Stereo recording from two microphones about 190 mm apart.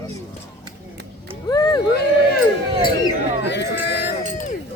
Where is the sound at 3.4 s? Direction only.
65° left (ahead or behind).